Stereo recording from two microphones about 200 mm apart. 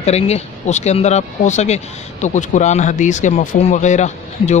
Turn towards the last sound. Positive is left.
turn(degrees=35)  # may be behind; listen again after turning